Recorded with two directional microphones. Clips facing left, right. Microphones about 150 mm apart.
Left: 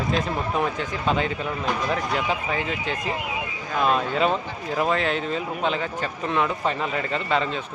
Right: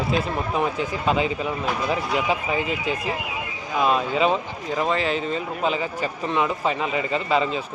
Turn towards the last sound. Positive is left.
turn(degrees=-5)  # may be behind; listen again after turning